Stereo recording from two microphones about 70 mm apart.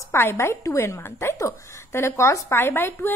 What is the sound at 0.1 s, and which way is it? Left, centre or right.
A woman's voice, left.